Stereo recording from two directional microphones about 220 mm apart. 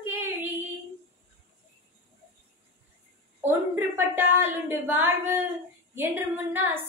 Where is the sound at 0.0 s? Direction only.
10° right (ahead or behind).